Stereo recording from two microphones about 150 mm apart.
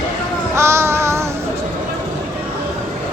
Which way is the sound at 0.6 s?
15° right (ahead or behind).